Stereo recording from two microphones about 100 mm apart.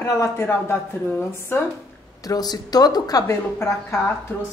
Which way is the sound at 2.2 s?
40° left (ahead or behind).